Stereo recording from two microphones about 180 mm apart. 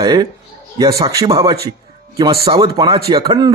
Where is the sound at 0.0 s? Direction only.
25° right (ahead or behind).